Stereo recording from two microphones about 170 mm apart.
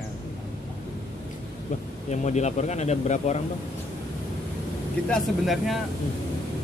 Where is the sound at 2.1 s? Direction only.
40° left (ahead or behind).